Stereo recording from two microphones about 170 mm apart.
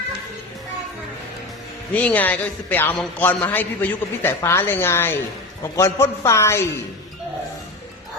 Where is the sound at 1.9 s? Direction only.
10° left (ahead or behind).